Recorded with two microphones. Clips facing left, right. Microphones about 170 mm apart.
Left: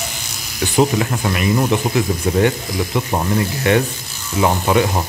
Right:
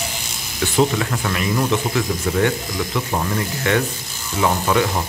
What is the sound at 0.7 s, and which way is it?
Speech, 20° left (ahead or behind).